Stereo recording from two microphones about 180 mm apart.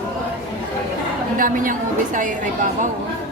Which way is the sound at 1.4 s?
50° right (ahead or behind).